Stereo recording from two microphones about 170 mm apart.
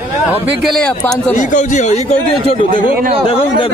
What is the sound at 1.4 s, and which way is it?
Speech, 45° left (ahead or behind).